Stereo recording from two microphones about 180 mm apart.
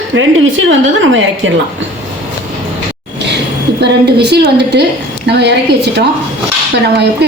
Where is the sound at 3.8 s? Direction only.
65° right (ahead or behind).